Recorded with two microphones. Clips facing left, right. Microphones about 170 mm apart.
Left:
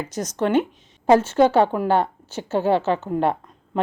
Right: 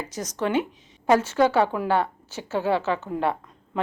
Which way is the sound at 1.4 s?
25° left (ahead or behind).